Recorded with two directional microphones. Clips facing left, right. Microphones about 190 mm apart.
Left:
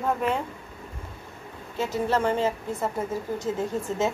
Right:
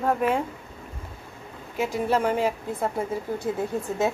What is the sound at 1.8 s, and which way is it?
A woman's voice, 15° right (ahead or behind).